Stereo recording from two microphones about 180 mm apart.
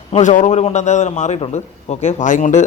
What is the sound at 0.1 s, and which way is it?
Speech, 45° left (ahead or behind).